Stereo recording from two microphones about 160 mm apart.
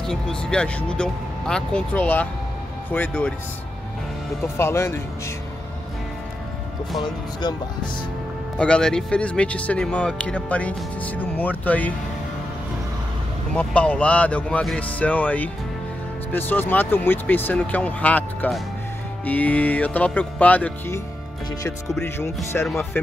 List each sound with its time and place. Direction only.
0.0 s speech: 5° left (ahead or behind)
4.6 s speech: 15° left (ahead or behind)
7.4 s speech: 25° left (ahead or behind)
8.5 s speech: 5° left (ahead or behind)
13.6 s speech: 10° left (ahead or behind)
22.0 s speech: 15° left (ahead or behind)